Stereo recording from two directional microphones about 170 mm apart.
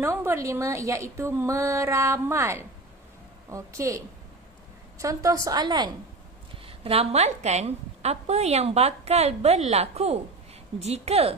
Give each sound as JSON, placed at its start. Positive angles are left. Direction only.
{"t": 0.0, "sound": "a woman's voice", "side_deg": -15}